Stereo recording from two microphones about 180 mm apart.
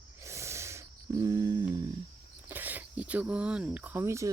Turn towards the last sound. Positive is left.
turn(degrees=-15)  # may be behind; listen again after turning